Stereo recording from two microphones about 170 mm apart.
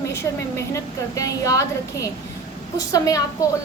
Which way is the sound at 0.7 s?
20° left (ahead or behind).